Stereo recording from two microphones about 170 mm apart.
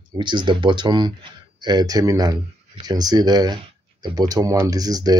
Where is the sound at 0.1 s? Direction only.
25° right (ahead or behind).